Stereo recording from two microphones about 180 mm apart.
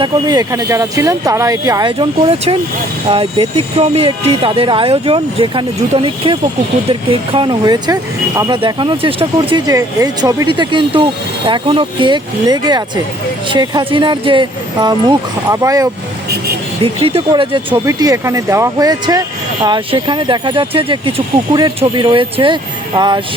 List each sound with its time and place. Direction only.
0.0 s speech: 20° right (ahead or behind)
16.8 s speech: 30° right (ahead or behind)
17.7 s speech: 15° right (ahead or behind)